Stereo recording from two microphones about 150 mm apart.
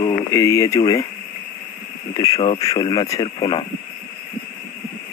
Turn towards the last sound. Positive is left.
turn(degrees=35)  # may be behind; listen again after turning